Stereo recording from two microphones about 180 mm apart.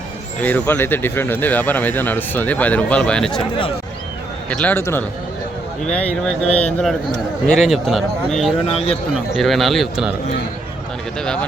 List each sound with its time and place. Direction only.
0.4 s speech: 10° left (ahead or behind)
4.4 s speech: 10° left (ahead or behind)
8.6 s speech: 35° left (ahead or behind)
9.3 s speech: centre (ahead or behind)
11.2 s speech: 5° left (ahead or behind)